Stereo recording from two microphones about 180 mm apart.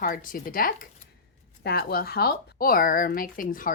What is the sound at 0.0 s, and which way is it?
A woman's voice, 50° left (ahead or behind).